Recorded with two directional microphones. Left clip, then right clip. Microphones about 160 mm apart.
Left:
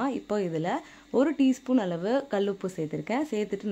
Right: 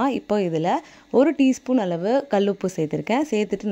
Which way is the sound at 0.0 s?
40° right (ahead or behind).